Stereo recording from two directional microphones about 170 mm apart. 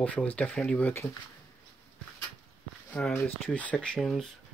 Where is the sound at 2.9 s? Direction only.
5° left (ahead or behind).